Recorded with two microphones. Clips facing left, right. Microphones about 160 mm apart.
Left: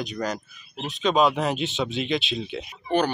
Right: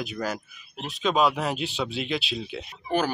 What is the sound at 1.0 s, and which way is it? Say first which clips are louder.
Speech: left 2 dB; centre (ahead or behind).